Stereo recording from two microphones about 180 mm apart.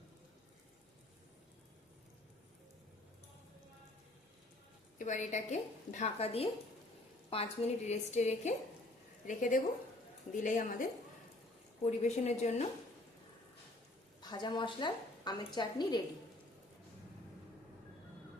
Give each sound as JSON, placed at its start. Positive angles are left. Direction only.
{"t": 4.9, "sound": "a woman's voice", "side_deg": 45}
{"t": 14.2, "sound": "a woman's voice", "side_deg": 25}